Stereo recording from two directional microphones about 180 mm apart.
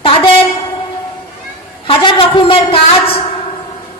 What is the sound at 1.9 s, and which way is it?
A woman's voice, 30° left (ahead or behind).